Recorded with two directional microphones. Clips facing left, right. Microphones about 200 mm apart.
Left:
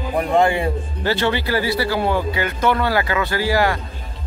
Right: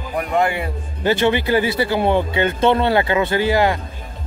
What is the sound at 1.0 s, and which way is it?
A man's voice, 20° right (ahead or behind).